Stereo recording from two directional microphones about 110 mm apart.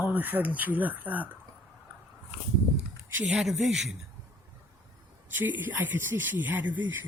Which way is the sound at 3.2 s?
Centre (ahead or behind).